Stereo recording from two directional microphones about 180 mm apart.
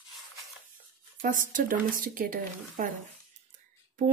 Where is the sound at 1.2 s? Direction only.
45° right (ahead or behind).